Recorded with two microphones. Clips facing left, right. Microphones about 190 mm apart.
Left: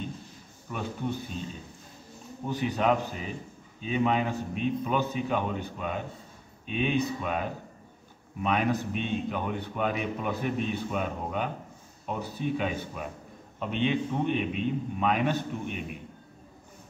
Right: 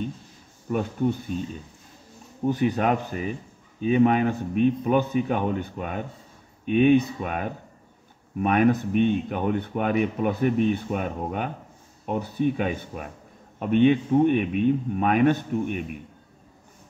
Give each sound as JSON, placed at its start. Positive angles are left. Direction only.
{"t": 0.7, "sound": "speech", "side_deg": -45}
{"t": 2.4, "sound": "speech", "side_deg": -50}